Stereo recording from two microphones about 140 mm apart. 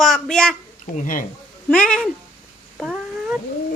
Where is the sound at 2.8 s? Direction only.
5° right (ahead or behind).